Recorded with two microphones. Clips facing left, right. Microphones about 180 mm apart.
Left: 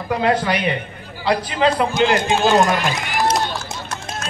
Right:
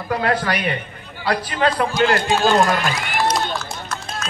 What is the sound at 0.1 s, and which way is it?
A man's voice, 20° left (ahead or behind).